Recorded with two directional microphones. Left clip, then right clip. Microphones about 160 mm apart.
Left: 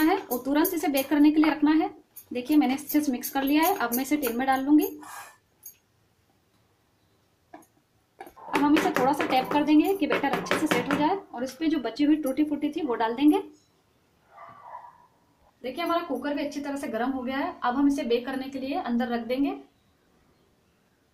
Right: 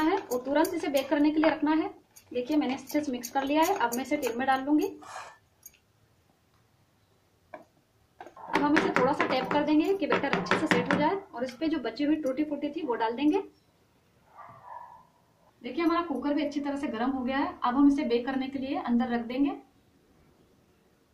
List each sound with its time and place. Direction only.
0.0 s a woman's voice: 35° left (ahead or behind)
8.6 s speech: 15° left (ahead or behind)
15.7 s a woman's voice: 40° left (ahead or behind)